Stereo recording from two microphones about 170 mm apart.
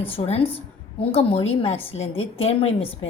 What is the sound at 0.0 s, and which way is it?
A woman's voice, 35° left (ahead or behind).